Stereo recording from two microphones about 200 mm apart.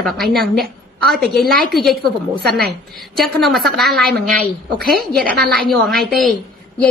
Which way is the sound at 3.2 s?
Centre (ahead or behind).